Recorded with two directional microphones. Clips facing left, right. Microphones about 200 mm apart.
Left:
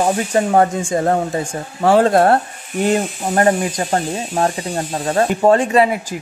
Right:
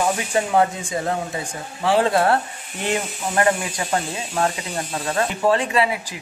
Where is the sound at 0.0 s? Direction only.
45° left (ahead or behind).